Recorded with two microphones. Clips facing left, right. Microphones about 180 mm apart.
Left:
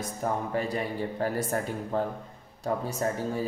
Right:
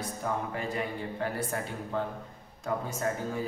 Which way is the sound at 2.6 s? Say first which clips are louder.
Left 2 dB; 35° left (ahead or behind).